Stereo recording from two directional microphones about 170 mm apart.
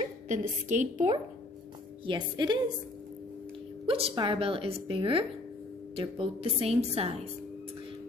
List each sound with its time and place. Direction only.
0.3 s a woman's voice: 45° right (ahead or behind)
2.0 s a woman's voice: 25° right (ahead or behind)
3.8 s speech: 35° right (ahead or behind)